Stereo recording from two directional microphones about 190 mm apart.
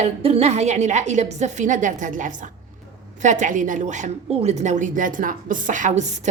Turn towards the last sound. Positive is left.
turn(degrees=-40)  # may be behind; listen again after turning